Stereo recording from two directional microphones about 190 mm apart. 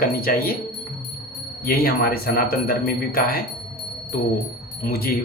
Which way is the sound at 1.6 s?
50° left (ahead or behind).